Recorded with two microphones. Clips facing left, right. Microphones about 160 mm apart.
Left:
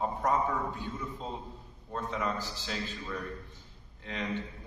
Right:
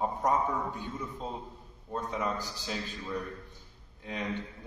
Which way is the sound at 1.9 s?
15° right (ahead or behind).